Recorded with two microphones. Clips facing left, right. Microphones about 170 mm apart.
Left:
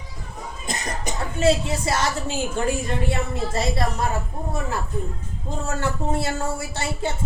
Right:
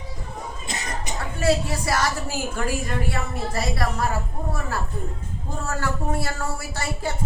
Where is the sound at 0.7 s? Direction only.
40° left (ahead or behind).